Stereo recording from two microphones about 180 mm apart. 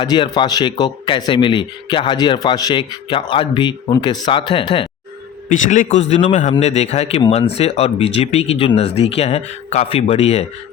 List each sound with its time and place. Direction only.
0.0 s speech: 25° left (ahead or behind)
5.5 s a man's voice: 45° left (ahead or behind)